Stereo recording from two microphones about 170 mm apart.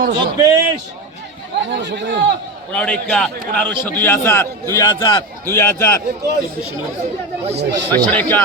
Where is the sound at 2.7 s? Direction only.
5° left (ahead or behind); by 5.2 s 25° left (ahead or behind).